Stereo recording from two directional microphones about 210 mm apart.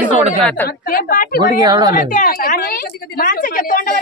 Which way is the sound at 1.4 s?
20° right (ahead or behind).